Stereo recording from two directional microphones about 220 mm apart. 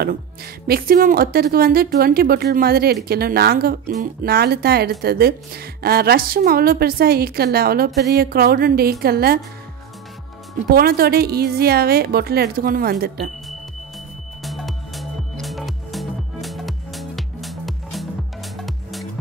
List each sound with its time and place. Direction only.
0.7 s speech: 40° right (ahead or behind)
10.7 s speech: 45° right (ahead or behind)
14.4 s music: centre (ahead or behind)